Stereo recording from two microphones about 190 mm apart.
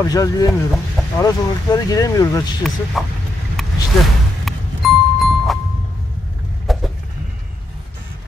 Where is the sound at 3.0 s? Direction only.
Centre (ahead or behind).